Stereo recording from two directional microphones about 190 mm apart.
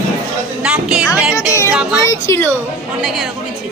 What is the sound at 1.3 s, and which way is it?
Speech, 15° left (ahead or behind).